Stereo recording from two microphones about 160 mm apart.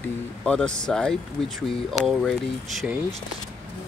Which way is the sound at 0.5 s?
5° left (ahead or behind).